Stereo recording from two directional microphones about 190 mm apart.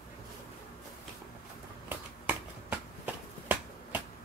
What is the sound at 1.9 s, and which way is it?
Finger snapping, 10° right (ahead or behind).